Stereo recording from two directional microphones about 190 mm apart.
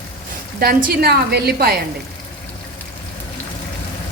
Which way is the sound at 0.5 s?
55° right (ahead or behind).